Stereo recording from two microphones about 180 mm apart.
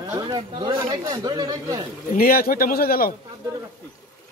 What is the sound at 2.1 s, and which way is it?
A man's voice, 55° left (ahead or behind).